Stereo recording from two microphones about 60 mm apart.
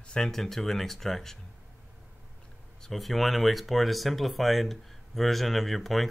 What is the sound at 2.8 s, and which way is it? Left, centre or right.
Speech, centre.